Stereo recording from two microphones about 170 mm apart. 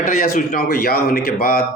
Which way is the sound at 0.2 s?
60° left (ahead or behind).